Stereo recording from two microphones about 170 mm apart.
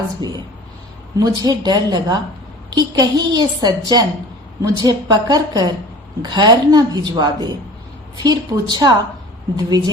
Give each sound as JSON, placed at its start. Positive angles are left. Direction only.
{"t": 0.2, "sound": "a woman's voice", "side_deg": -25}